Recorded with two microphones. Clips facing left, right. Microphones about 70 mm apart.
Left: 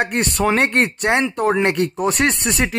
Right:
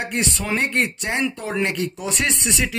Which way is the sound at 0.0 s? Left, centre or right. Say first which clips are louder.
Left 6 dB; left.